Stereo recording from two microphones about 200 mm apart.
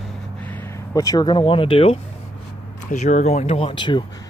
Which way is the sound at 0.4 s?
10° left (ahead or behind).